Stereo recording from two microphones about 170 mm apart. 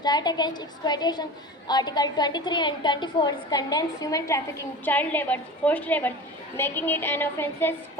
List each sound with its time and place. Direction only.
0.0 s a woman's voice: 25° left (ahead or behind)